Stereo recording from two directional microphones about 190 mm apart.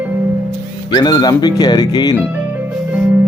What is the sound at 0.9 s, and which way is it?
Speech, 20° left (ahead or behind).